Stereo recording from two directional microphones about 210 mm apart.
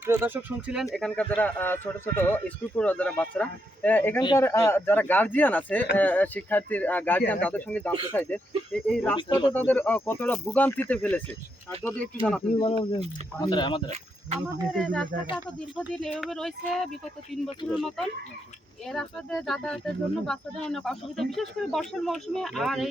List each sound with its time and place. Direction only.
0.0 s speech: 10° right (ahead or behind)
0.9 s speech: 5° left (ahead or behind)
9.1 s speech: 20° left (ahead or behind)
9.5 s speech: 10° left (ahead or behind)
12.5 s speech: 25° left (ahead or behind)
14.4 s speech: centre (ahead or behind)